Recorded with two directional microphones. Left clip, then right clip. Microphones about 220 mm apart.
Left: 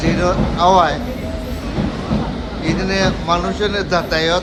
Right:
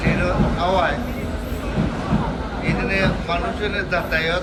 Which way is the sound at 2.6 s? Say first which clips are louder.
Left 3 dB; 10° left (ahead or behind).